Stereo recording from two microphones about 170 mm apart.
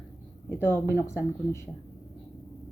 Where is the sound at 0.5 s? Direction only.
15° left (ahead or behind).